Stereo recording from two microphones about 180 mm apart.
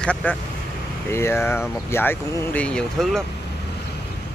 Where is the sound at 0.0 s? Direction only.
5° left (ahead or behind).